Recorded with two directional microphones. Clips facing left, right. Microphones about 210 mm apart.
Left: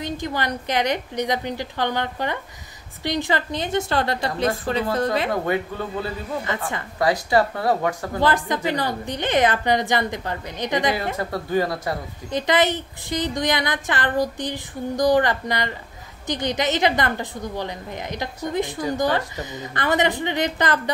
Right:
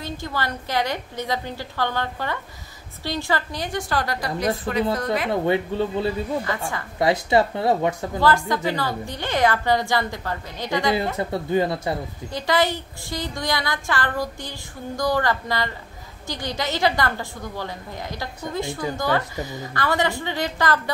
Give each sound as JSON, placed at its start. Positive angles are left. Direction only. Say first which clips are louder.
{"t": 0.0, "sound": "a woman's voice", "louder": "left 3 dB", "side_deg": 20}
{"t": 5.3, "sound": "speech", "louder": "right 2 dB", "side_deg": -25}
{"t": 6.5, "sound": "a woman's voice", "louder": "even", "side_deg": 20}
{"t": 7.0, "sound": "speech", "louder": "right 1 dB", "side_deg": -25}
{"t": 8.2, "sound": "a woman's voice", "louder": "right 1 dB", "side_deg": 20}
{"t": 11.1, "sound": "speech", "louder": "right 1 dB", "side_deg": -25}
{"t": 12.3, "sound": "a woman's voice", "louder": "left 2 dB", "side_deg": 20}